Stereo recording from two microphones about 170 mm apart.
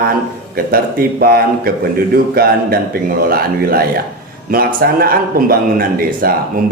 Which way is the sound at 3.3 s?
60° right (ahead or behind).